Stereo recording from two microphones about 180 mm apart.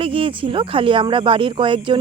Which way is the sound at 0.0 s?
30° right (ahead or behind).